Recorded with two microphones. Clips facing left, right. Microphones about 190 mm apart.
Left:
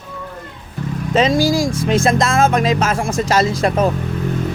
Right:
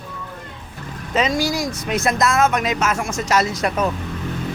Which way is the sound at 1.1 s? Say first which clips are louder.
Left 5 dB; 30° left (ahead or behind).